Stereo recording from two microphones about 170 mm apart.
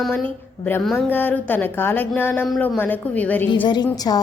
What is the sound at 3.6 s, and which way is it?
Speech, 25° left (ahead or behind).